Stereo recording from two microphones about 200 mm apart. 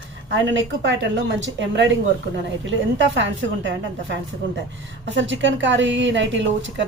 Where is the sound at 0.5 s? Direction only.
65° right (ahead or behind).